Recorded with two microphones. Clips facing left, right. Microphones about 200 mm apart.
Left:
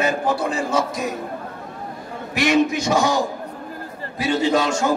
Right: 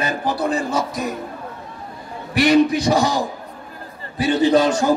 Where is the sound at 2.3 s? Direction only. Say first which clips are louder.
Right 3 dB; 35° right (ahead or behind).